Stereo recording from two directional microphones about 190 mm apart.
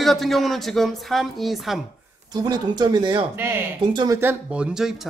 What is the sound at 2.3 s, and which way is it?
Speech, 20° right (ahead or behind).